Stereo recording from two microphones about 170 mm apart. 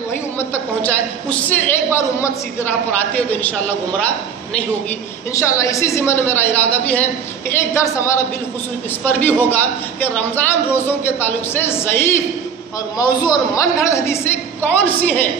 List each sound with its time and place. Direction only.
0.4 s a man's voice: 10° left (ahead or behind)
5.3 s a man's voice: 20° left (ahead or behind)